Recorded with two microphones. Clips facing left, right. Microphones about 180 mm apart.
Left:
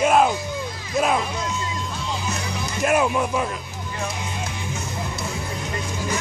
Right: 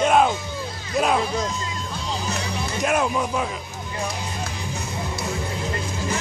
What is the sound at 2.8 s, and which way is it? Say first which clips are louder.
Speech: left 2 dB; 5° left (ahead or behind).